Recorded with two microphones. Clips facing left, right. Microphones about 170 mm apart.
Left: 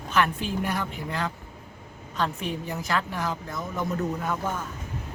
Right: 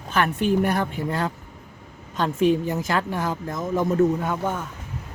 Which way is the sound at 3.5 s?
20° right (ahead or behind).